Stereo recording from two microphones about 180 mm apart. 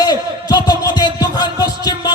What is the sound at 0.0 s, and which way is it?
Music, 20° left (ahead or behind).